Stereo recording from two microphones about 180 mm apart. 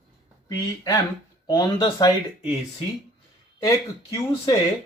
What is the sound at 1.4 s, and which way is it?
Speech, 25° left (ahead or behind).